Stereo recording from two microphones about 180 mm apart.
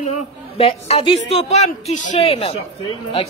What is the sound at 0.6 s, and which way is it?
A woman's voice, 35° left (ahead or behind).